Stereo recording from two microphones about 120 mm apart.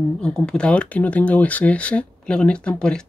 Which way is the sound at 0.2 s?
5° left (ahead or behind).